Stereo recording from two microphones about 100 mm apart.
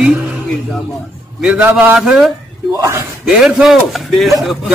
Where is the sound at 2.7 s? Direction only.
30° right (ahead or behind).